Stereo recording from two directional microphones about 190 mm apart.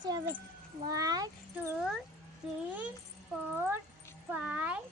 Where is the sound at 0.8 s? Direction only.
20° right (ahead or behind).